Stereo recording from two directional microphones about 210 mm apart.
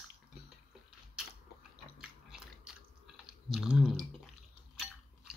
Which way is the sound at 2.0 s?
5° right (ahead or behind).